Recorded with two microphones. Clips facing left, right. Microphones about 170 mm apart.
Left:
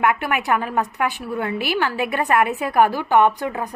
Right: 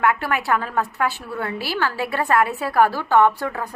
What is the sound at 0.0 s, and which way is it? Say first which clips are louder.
A woman's voice: left 1 dB; 20° left (ahead or behind).